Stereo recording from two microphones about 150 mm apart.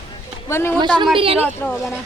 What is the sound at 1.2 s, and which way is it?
Speech, 40° right (ahead or behind).